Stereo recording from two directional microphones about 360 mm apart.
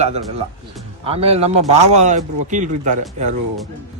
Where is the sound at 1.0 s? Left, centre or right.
Centre.